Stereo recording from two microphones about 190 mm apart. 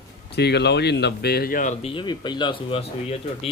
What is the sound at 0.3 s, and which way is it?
Speech, 60° left (ahead or behind).